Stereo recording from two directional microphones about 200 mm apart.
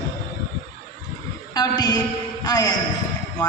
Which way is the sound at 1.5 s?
20° left (ahead or behind).